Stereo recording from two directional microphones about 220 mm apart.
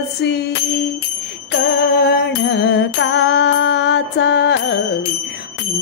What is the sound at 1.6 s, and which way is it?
Music, 50° left (ahead or behind).